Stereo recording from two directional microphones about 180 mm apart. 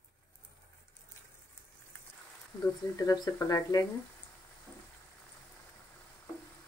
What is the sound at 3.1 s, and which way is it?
Speech, 20° left (ahead or behind).